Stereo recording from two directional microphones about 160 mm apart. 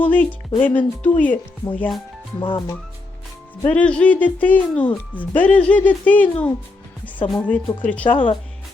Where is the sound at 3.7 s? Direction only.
10° left (ahead or behind).